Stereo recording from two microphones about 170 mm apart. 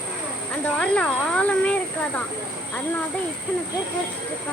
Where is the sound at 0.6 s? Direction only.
5° left (ahead or behind).